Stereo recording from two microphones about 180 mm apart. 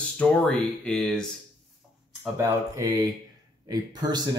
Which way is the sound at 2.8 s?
20° right (ahead or behind).